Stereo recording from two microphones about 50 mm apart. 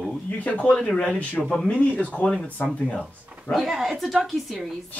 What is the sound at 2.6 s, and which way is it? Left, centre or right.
Speech, left.